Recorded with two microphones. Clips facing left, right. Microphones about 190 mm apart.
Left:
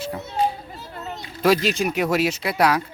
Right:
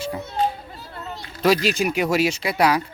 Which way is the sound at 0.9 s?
20° left (ahead or behind).